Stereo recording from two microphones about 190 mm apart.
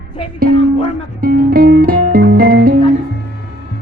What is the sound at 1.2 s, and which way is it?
Music, 50° right (ahead or behind).